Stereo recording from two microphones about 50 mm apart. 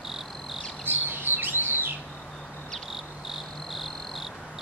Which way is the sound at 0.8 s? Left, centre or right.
Right.